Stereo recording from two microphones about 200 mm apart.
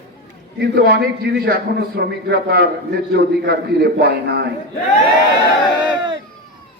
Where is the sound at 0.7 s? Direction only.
50° right (ahead or behind).